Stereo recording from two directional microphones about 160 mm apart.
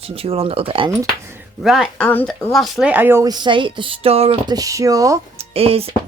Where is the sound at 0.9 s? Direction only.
20° right (ahead or behind).